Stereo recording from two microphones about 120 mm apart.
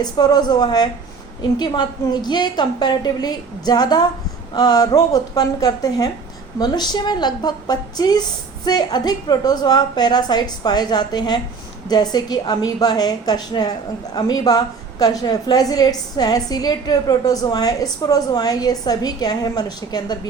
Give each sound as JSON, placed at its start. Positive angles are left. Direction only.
{"t": 0.0, "sound": "a woman's voice", "side_deg": 35}